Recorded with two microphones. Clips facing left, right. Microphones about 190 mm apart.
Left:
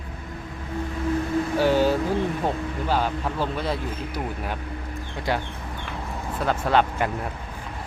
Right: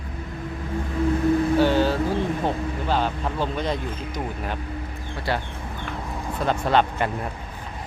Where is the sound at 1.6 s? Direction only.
10° left (ahead or behind).